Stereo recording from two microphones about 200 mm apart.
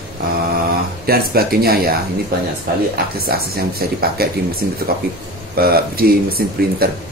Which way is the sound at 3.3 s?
50° right (ahead or behind).